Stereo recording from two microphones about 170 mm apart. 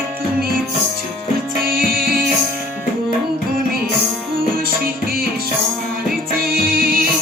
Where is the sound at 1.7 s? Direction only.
60° right (ahead or behind).